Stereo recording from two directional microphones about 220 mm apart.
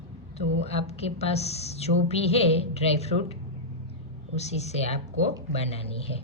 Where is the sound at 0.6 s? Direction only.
30° left (ahead or behind).